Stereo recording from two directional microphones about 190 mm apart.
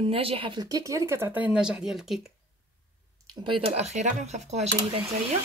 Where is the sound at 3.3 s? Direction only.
25° right (ahead or behind).